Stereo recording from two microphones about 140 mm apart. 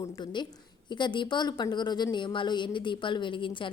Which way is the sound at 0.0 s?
30° left (ahead or behind).